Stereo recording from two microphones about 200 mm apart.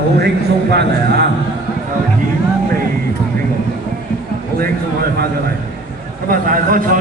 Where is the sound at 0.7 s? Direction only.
55° right (ahead or behind).